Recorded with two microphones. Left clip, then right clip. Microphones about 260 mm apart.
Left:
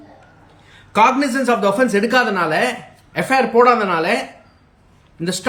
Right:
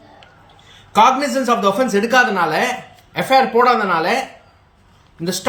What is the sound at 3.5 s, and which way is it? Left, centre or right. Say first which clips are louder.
Speech: left 1 dB; left.